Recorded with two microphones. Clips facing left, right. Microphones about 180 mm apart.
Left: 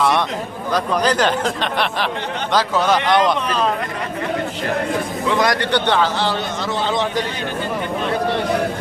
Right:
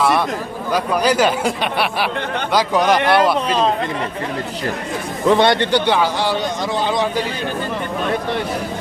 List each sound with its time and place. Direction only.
0.7 s speech: 10° right (ahead or behind)
5.4 s a man's voice: 30° right (ahead or behind)
5.7 s speech: 10° right (ahead or behind)